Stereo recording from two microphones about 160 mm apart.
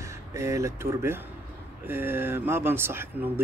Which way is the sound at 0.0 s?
20° right (ahead or behind).